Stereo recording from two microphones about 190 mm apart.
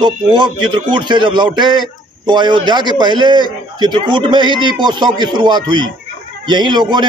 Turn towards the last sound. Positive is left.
turn(degrees=-25)  # may be behind; listen again after turning